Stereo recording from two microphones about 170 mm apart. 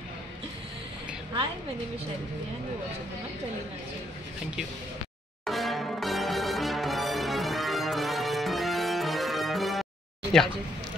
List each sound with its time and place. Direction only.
5.4 s music: centre (ahead or behind)